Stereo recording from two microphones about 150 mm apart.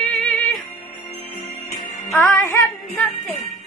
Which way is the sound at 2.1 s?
15° left (ahead or behind).